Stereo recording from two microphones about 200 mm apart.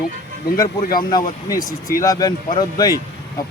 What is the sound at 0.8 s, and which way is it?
Speech, 45° left (ahead or behind).